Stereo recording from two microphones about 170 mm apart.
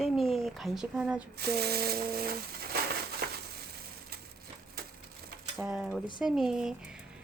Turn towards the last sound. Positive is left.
turn(degrees=-5)  # may be behind; listen again after turning